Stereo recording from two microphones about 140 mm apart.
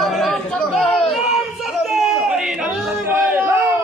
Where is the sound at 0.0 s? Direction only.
Centre (ahead or behind).